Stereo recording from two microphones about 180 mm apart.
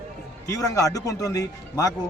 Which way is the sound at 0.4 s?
20° left (ahead or behind).